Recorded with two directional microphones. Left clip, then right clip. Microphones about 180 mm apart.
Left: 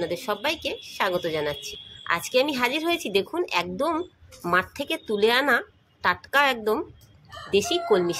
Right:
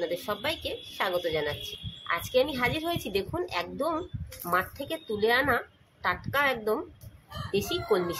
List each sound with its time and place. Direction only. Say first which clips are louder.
0.0 s a woman's voice: left 4 dB; 30° left (ahead or behind)